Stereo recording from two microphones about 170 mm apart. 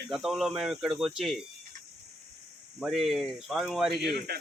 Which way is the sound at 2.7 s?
Centre (ahead or behind).